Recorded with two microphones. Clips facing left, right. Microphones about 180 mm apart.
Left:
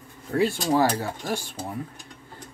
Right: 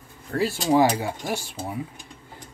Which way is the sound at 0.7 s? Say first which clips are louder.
Right 5 dB; 15° right (ahead or behind).